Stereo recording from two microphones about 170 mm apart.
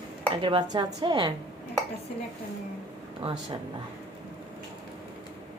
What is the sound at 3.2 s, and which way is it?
Speech, 35° right (ahead or behind).